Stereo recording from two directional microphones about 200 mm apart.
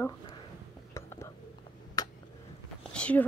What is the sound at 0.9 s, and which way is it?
Whispering, 15° left (ahead or behind).